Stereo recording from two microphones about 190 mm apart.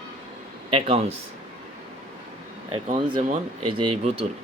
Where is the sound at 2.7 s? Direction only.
25° right (ahead or behind).